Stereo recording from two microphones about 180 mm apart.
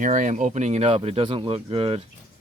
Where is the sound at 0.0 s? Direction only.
45° right (ahead or behind).